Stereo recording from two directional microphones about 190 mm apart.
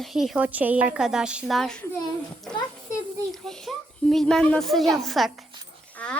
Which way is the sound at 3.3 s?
Centre (ahead or behind).